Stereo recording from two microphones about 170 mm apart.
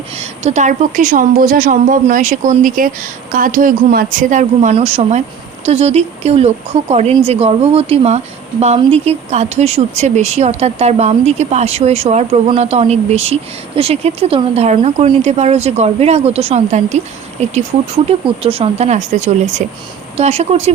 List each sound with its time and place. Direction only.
0.2 s a woman's voice: 40° right (ahead or behind)